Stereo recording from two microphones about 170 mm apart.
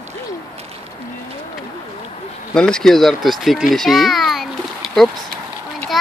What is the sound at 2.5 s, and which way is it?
Speech, 5° left (ahead or behind).